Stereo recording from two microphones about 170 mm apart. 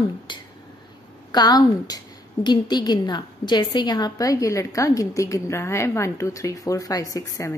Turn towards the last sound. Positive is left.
turn(degrees=15)  # may be behind; listen again after turning